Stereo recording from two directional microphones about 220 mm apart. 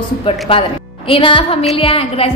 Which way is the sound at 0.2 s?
25° left (ahead or behind).